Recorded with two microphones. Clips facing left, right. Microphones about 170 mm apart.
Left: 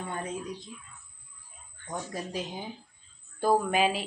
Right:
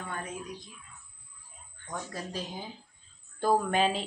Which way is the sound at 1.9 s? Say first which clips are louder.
Left 2 dB; 20° left (ahead or behind).